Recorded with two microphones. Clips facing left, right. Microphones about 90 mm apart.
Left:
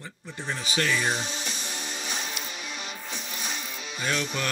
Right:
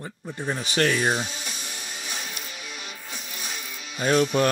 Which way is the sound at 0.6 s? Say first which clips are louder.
Right 4 dB; 50° right (ahead or behind).